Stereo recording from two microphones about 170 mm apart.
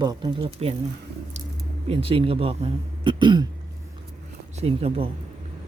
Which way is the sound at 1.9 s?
35° right (ahead or behind).